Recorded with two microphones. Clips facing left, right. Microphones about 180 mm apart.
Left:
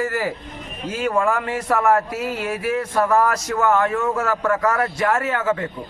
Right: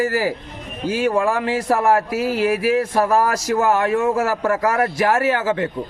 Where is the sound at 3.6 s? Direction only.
30° right (ahead or behind).